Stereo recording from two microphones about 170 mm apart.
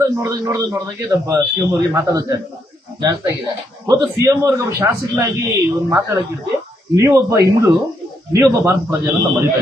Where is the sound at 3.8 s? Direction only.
20° right (ahead or behind).